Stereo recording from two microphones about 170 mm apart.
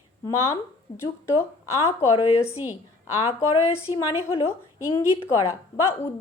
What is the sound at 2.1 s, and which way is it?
Speech, 35° left (ahead or behind).